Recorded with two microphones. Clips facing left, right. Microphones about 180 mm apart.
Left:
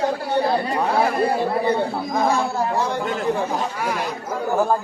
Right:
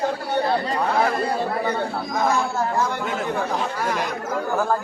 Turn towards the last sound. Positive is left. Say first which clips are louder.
# left 3 dB
turn(degrees=15)  # may be behind; listen again after turning